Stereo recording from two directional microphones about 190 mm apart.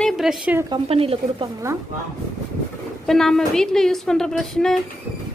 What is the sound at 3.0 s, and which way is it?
A woman's voice, centre (ahead or behind).